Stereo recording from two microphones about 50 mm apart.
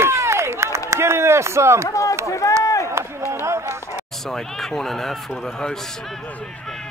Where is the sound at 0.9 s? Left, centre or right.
Right.